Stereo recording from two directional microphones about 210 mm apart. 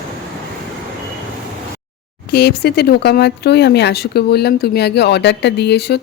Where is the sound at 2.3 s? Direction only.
50° left (ahead or behind).